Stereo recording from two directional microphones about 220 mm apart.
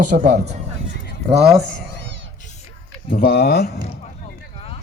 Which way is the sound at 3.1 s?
45° left (ahead or behind).